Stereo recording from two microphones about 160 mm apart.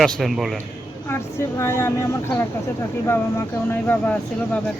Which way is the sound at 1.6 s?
15° left (ahead or behind).